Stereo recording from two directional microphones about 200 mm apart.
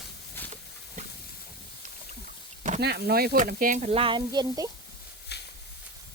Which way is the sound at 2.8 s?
55° right (ahead or behind).